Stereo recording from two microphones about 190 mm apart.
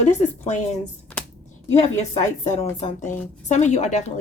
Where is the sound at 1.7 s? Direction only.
35° left (ahead or behind).